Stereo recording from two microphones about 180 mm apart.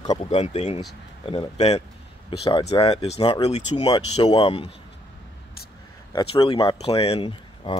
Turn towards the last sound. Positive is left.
turn(degrees=30)  # may be behind; listen again after turning